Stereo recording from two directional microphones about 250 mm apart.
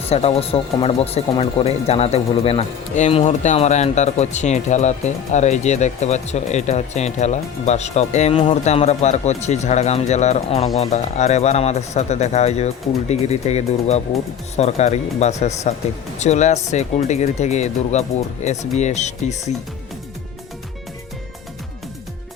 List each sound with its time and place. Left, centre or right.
0.1 s speech: left